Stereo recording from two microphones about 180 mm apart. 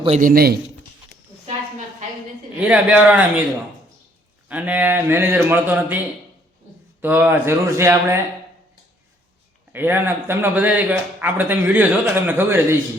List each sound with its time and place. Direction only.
0.2 s a man's voice: 55° right (ahead or behind)
2.6 s speech: 5° right (ahead or behind)
4.4 s speech: 10° right (ahead or behind)
7.0 s speech: 10° right (ahead or behind)
9.7 s speech: 10° right (ahead or behind)